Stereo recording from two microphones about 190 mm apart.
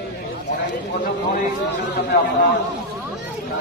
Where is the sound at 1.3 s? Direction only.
60° left (ahead or behind).